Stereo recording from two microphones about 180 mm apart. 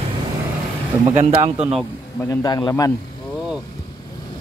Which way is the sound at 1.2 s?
35° right (ahead or behind).